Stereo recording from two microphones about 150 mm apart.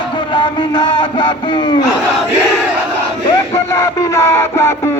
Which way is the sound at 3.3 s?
25° left (ahead or behind).